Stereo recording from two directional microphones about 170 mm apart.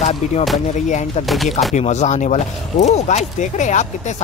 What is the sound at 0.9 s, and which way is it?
Speech, 45° left (ahead or behind).